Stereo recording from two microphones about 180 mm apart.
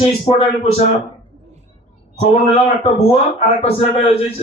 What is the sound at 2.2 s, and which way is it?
A man's voice, 35° left (ahead or behind).